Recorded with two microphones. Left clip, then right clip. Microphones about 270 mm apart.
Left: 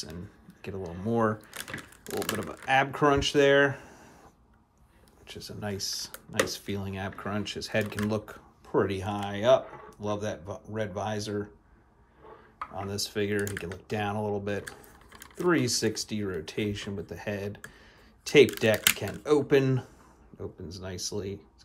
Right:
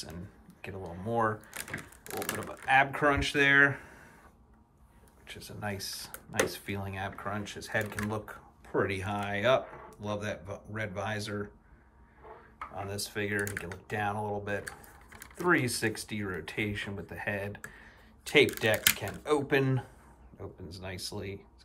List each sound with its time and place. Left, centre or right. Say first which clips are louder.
0.0 s speech: left 3 dB; centre
1.6 s speech: left 1 dB; centre
5.2 s speech: left 1 dB; centre
12.8 s speech: left 4 dB; centre
15.4 s speech: left 2 dB; centre